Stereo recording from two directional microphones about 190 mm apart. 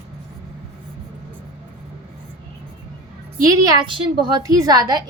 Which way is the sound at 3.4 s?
20° right (ahead or behind).